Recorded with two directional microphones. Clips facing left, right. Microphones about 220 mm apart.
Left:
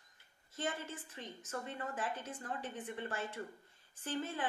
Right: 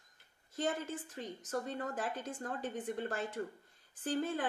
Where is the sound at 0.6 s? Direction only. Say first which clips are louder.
Right 4 dB; 40° right (ahead or behind).